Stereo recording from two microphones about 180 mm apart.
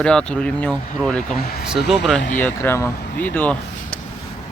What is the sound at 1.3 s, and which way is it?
Speech, 60° left (ahead or behind).